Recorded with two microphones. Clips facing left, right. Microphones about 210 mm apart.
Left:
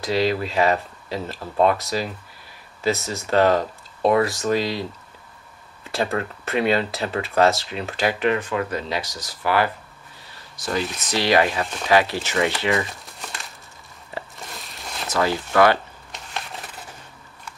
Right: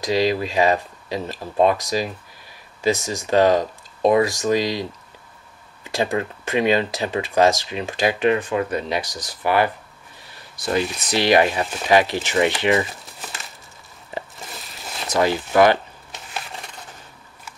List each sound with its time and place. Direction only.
0.0 s speech: 15° right (ahead or behind)
5.9 s speech: 15° right (ahead or behind)
11.1 s speech: 15° right (ahead or behind)
11.6 s speech: 5° right (ahead or behind)
11.9 s speech: 15° right (ahead or behind)
12.8 s crumpling: centre (ahead or behind)
14.3 s a sound: centre (ahead or behind)
15.0 s speech: 15° right (ahead or behind)
16.3 s a sound: centre (ahead or behind)